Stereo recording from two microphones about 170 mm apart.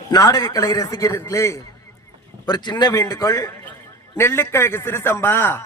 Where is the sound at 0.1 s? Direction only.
20° left (ahead or behind).